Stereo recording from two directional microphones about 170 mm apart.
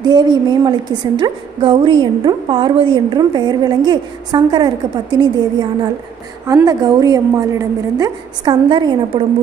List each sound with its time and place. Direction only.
0.0 s a woman's voice: 25° right (ahead or behind)